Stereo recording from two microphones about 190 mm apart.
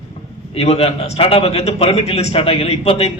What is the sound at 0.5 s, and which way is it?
A man's voice, 30° left (ahead or behind).